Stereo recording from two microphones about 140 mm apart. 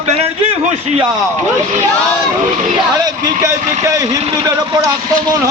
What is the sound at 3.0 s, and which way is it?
A man's voice, 25° right (ahead or behind).